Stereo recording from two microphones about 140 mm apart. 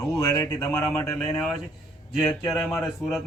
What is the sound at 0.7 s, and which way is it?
Speech, 5° left (ahead or behind).